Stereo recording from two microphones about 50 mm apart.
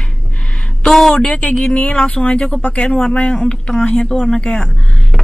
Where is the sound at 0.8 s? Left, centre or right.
Centre.